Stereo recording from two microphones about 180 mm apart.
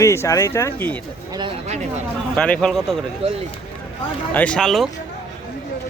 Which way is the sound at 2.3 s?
5° left (ahead or behind).